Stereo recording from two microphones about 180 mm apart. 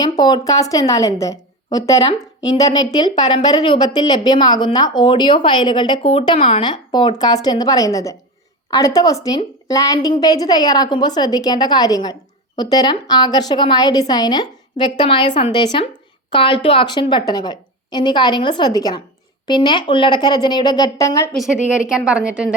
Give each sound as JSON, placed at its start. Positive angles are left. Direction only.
{"t": 0.0, "sound": "a woman's voice", "side_deg": 20}
{"t": 21.4, "sound": "a woman's voice", "side_deg": -5}